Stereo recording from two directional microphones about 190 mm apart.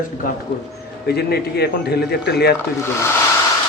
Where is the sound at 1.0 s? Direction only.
55° left (ahead or behind).